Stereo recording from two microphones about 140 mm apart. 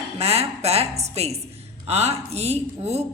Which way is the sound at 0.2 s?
50° right (ahead or behind).